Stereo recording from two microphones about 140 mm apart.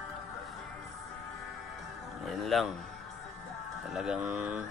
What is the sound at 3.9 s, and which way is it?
Speech, 5° right (ahead or behind).